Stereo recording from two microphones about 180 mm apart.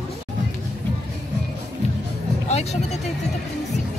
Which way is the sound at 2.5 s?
35° left (ahead or behind).